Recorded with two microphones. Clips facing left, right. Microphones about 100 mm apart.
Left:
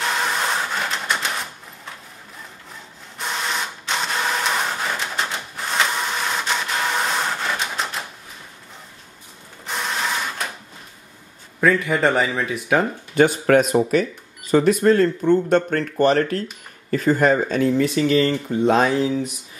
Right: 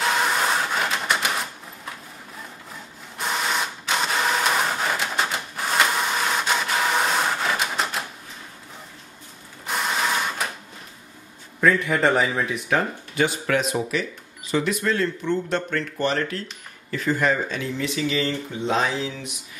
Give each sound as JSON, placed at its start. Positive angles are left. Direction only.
{"t": 0.0, "sound": "typewriter", "side_deg": 0}
{"t": 3.2, "sound": "printer", "side_deg": -5}
{"t": 9.7, "sound": "printer", "side_deg": -5}
{"t": 11.6, "sound": "speech", "side_deg": 0}
{"t": 13.1, "sound": "speech", "side_deg": 50}